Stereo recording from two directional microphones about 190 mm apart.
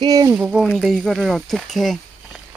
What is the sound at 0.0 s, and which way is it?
Speech, 20° right (ahead or behind).